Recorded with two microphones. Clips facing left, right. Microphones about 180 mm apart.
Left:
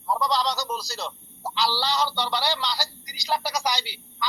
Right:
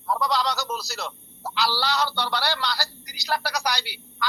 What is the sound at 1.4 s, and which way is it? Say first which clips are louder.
Speech: even; 15° left (ahead or behind).